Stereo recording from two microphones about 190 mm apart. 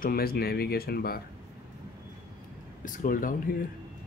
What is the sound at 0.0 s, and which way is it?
Speech, 50° left (ahead or behind).